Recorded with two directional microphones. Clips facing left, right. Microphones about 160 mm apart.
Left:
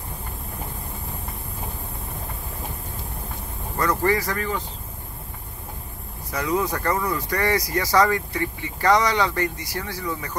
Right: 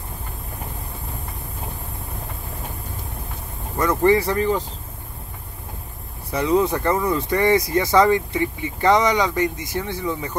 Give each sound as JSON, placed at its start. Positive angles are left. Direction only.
{"t": 3.7, "sound": "speech", "side_deg": -20}
{"t": 6.3, "sound": "speech", "side_deg": -25}